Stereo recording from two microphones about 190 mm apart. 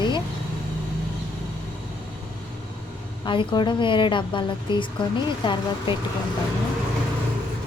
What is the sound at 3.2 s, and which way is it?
Speech, 25° left (ahead or behind).